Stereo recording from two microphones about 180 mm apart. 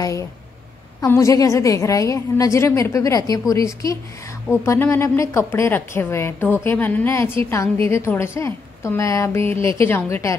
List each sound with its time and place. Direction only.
0.0 s a woman's voice: 15° left (ahead or behind)